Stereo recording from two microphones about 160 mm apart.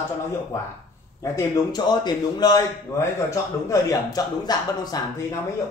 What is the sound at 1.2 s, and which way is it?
A man's voice, 20° left (ahead or behind).